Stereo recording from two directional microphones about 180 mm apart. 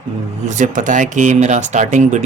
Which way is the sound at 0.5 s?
45° right (ahead or behind).